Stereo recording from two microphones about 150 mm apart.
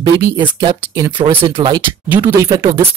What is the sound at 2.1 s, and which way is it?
Speech, 15° right (ahead or behind).